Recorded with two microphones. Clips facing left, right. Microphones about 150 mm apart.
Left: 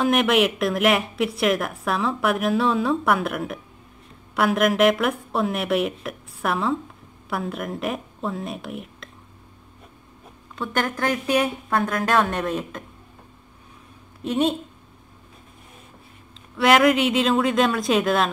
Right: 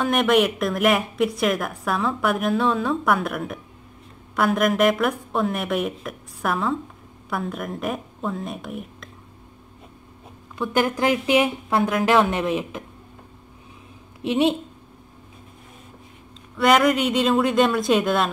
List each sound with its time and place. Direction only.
0.0 s speech: centre (ahead or behind)
10.6 s a woman's voice: 15° right (ahead or behind)
14.2 s a woman's voice: 15° right (ahead or behind)
16.5 s speech: centre (ahead or behind)